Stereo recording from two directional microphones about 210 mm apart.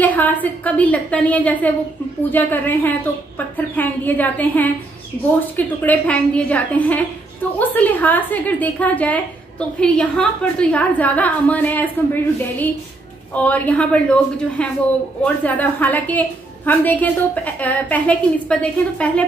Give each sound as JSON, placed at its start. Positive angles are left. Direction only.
{"t": 0.0, "sound": "a woman's voice", "side_deg": 10}